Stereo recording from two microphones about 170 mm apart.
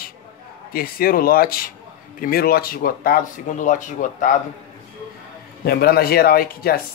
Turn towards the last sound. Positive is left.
turn(degrees=60)  # may be behind; listen again after turning